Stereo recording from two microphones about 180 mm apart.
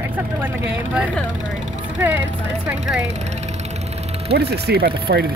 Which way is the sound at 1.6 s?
10° right (ahead or behind).